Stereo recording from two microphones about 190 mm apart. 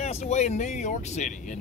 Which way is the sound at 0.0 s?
35° left (ahead or behind).